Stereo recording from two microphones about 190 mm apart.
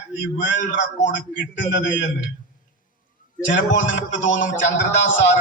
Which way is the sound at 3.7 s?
40° left (ahead or behind).